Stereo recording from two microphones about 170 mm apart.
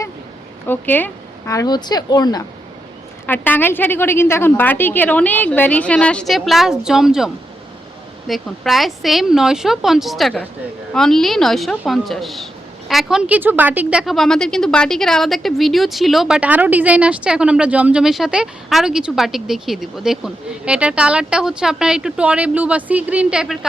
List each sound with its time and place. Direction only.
0.7 s a woman's voice: 10° left (ahead or behind)
3.2 s a woman's voice: 10° left (ahead or behind)
8.3 s speech: centre (ahead or behind)